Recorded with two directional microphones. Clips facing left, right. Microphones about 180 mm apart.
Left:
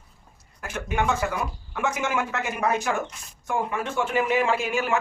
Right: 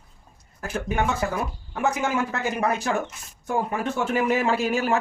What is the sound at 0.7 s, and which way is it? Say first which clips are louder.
A man's voice: even; 35° right (ahead or behind).